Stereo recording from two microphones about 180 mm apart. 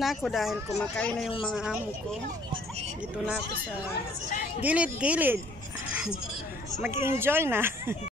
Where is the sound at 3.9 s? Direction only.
50° left (ahead or behind).